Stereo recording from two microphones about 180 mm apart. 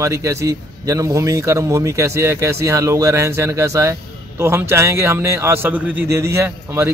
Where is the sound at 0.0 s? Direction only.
15° right (ahead or behind).